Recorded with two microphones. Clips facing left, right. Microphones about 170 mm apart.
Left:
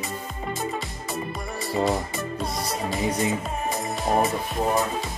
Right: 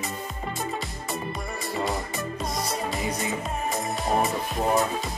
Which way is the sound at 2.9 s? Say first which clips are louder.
Left 4 dB; centre (ahead or behind).